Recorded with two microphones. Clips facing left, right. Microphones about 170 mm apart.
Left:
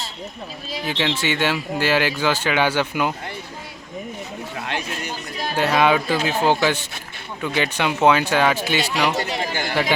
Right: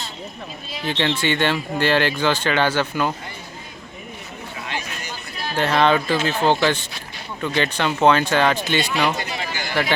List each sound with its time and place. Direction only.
0.9 s speech: 10° left (ahead or behind)
4.5 s a sound: 55° left (ahead or behind)
5.4 s speech: 10° left (ahead or behind)
9.4 s chatter: 50° left (ahead or behind)